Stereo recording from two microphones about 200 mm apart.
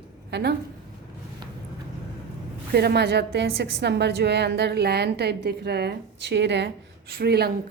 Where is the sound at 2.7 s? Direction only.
55° right (ahead or behind).